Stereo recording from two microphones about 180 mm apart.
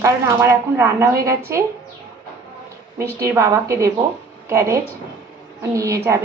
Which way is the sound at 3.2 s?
15° right (ahead or behind).